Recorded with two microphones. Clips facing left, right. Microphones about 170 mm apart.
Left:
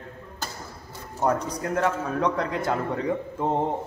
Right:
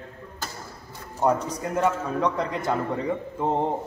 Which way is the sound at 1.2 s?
Centre (ahead or behind).